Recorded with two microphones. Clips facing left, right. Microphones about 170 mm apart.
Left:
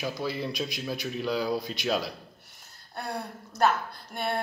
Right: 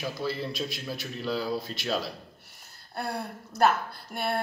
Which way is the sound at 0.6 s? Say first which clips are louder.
Left 2 dB; 15° left (ahead or behind).